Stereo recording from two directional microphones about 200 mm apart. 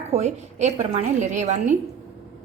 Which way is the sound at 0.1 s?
35° right (ahead or behind).